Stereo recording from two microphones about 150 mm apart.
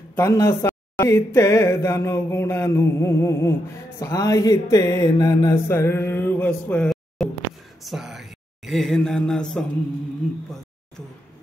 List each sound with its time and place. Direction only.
0.1 s speech: 15° left (ahead or behind)